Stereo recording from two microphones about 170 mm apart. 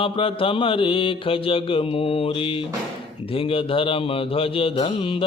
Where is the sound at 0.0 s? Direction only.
30° left (ahead or behind).